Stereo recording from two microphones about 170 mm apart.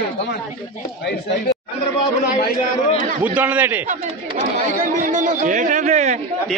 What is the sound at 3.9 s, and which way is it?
Speech, 50° right (ahead or behind).